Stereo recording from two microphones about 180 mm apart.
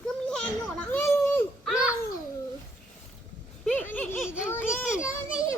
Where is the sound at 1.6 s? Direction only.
5° right (ahead or behind).